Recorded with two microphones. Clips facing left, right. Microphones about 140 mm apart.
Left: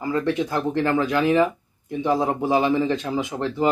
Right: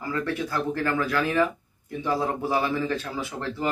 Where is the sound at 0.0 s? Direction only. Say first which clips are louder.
Left 6 dB; 20° left (ahead or behind).